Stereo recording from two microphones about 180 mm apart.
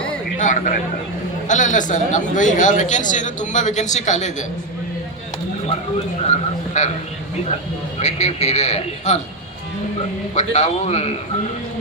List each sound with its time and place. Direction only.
0.3 s a man's voice: 45° left (ahead or behind)
6.8 s a man's voice: 40° left (ahead or behind)
7.9 s a man's voice: 40° left (ahead or behind)
10.3 s a man's voice: 40° left (ahead or behind)